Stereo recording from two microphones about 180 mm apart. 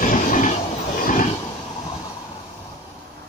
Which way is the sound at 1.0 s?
45° left (ahead or behind).